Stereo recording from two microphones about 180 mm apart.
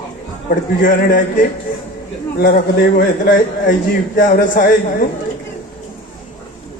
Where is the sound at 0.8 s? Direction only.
50° left (ahead or behind).